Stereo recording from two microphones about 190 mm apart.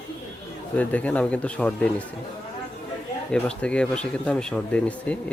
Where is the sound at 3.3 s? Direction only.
5° left (ahead or behind).